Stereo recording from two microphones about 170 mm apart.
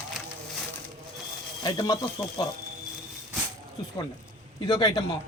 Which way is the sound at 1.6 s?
25° left (ahead or behind).